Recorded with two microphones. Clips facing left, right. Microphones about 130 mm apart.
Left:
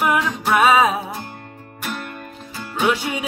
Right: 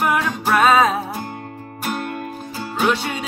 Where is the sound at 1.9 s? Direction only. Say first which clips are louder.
Right 4 dB; 45° right (ahead or behind).